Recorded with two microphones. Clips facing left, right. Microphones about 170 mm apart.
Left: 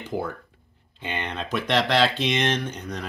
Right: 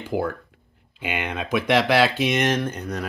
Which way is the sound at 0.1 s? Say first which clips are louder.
Right 4 dB; 15° right (ahead or behind).